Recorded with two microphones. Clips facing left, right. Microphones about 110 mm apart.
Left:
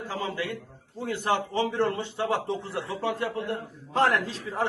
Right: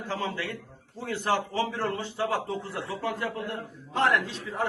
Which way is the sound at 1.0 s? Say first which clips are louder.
Left 1 dB; 20° left (ahead or behind).